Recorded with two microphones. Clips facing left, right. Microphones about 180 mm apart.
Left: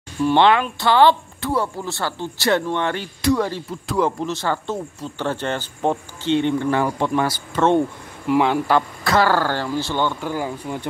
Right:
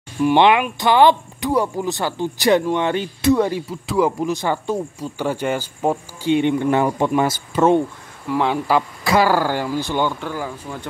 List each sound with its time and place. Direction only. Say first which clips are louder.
0.2 s speech: right 1 dB; 15° right (ahead or behind)
3.8 s speech: right 2 dB; 5° right (ahead or behind)
8.4 s speech: even; centre (ahead or behind)
9.0 s speech: right 3 dB; 15° right (ahead or behind)
10.2 s speech: left 2 dB; 15° left (ahead or behind)